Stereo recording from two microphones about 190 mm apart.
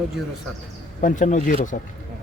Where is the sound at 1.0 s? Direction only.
40° left (ahead or behind).